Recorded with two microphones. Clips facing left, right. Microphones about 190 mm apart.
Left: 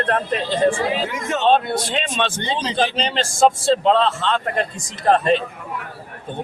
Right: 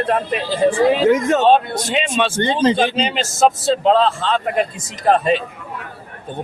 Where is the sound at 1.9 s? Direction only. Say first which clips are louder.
Right 4 dB; 10° right (ahead or behind).